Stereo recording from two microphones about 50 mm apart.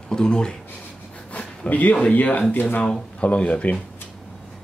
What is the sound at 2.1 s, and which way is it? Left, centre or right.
Speech, left.